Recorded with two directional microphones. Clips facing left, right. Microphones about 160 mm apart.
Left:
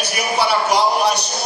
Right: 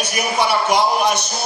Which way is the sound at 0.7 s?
35° left (ahead or behind).